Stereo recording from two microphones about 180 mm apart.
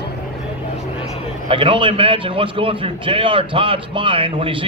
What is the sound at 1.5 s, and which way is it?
A man's voice, 30° right (ahead or behind).